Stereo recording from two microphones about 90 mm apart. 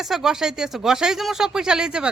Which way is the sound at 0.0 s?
5° right (ahead or behind).